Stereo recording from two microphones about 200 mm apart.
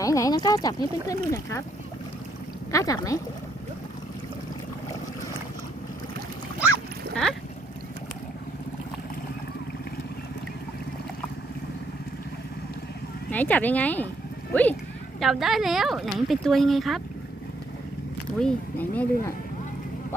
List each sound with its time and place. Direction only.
0.0 s speech: 15° left (ahead or behind)
2.7 s speech: 15° left (ahead or behind)
7.1 s speech: 5° left (ahead or behind)
13.3 s speech: 10° left (ahead or behind)
18.3 s speech: 5° left (ahead or behind)